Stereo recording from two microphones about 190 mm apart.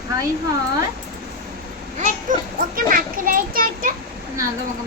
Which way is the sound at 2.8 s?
45° right (ahead or behind).